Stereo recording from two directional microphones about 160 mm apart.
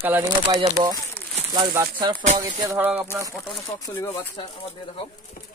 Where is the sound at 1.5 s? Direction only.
30° right (ahead or behind).